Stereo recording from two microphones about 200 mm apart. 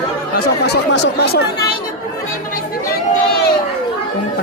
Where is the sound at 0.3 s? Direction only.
55° left (ahead or behind).